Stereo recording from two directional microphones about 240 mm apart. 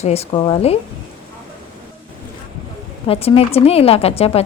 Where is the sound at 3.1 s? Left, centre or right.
Left.